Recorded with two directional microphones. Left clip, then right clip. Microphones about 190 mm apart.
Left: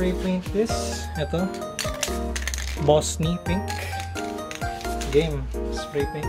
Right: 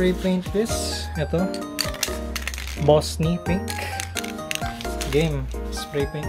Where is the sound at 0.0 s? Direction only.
45° right (ahead or behind).